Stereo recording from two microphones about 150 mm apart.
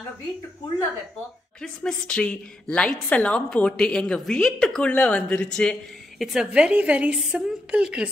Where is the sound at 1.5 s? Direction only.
5° left (ahead or behind).